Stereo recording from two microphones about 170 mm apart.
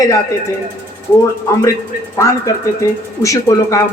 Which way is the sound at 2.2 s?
20° left (ahead or behind).